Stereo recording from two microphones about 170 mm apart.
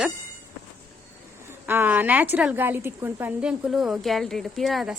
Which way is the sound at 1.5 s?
15° right (ahead or behind).